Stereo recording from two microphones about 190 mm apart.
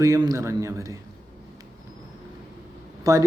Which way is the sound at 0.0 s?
20° right (ahead or behind).